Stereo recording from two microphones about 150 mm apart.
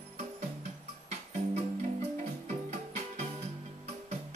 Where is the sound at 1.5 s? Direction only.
45° right (ahead or behind).